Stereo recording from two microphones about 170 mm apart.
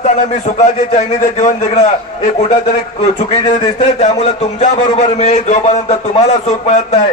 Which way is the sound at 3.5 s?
45° left (ahead or behind).